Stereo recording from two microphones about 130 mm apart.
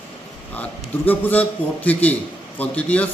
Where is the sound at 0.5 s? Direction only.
15° left (ahead or behind).